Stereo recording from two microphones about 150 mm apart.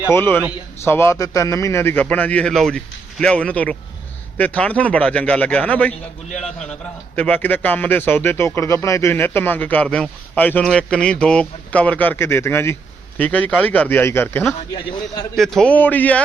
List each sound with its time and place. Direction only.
0.1 s a man's voice: 15° left (ahead or behind)
15.4 s speech: centre (ahead or behind)